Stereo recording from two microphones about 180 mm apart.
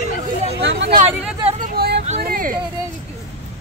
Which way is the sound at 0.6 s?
75° right (ahead or behind).